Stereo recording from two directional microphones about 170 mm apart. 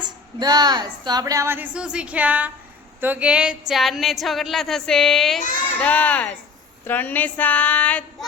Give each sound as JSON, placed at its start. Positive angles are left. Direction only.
{"t": 0.0, "sound": "a woman's voice", "side_deg": -25}